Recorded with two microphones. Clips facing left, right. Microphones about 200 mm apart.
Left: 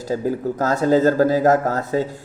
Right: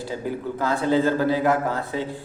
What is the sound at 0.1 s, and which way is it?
A man's voice, 40° left (ahead or behind).